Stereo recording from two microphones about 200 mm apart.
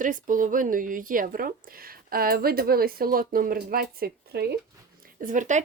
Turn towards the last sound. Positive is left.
turn(degrees=-40)  # may be behind; listen again after turning